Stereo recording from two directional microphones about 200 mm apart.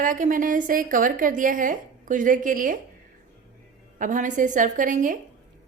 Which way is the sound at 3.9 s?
40° right (ahead or behind).